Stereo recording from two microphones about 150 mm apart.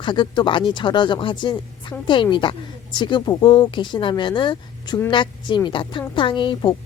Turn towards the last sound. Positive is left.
turn(degrees=35)  # may be behind; listen again after turning